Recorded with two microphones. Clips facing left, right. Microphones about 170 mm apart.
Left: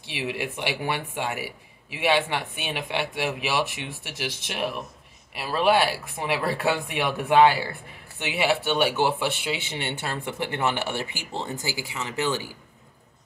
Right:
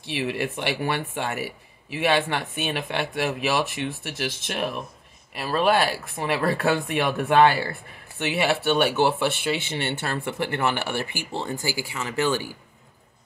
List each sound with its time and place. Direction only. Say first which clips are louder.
0.0 s a man's voice: right 3 dB; 15° left (ahead or behind)